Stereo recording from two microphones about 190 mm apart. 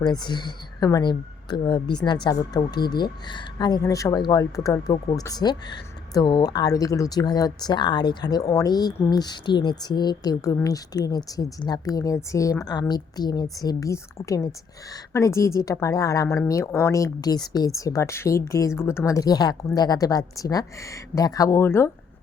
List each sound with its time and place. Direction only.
0.0 s speech: 20° left (ahead or behind)